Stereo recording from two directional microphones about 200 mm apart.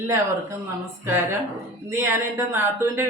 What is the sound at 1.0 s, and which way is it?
Speech, 10° right (ahead or behind).